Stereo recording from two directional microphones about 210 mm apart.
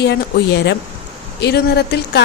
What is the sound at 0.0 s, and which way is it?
A woman's voice, 55° left (ahead or behind).